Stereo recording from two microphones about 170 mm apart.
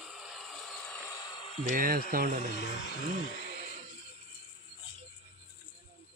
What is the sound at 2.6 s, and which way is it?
Speech, 90° left.